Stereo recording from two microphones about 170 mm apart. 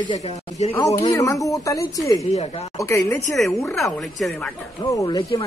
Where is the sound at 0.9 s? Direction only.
20° left (ahead or behind).